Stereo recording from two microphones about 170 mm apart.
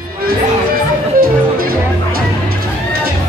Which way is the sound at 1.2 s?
60° right (ahead or behind).